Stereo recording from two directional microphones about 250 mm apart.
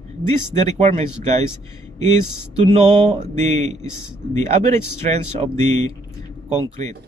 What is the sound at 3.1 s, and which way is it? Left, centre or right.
Speech, right.